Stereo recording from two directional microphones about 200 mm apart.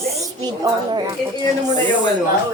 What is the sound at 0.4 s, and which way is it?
Speech, 20° right (ahead or behind).